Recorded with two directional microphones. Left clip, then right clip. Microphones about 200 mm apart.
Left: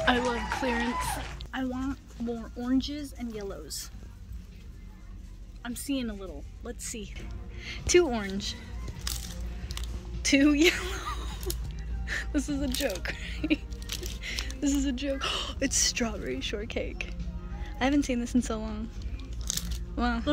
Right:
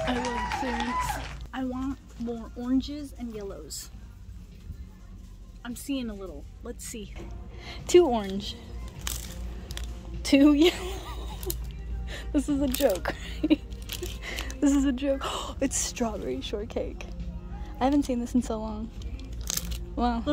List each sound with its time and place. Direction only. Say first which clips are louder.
0.0 s a sound: left 3 dB; centre (ahead or behind)
5.6 s speech: even; centre (ahead or behind)
10.2 s a woman's voice: right 2 dB; 10° right (ahead or behind)
20.0 s speech: right 2 dB; 10° right (ahead or behind)